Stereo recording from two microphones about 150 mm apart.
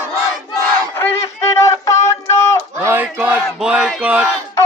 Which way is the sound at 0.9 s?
15° left (ahead or behind).